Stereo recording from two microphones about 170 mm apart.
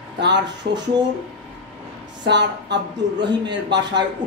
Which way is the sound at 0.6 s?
80° right.